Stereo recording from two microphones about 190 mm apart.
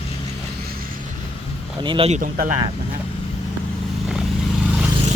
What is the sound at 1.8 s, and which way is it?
Speech, 25° right (ahead or behind).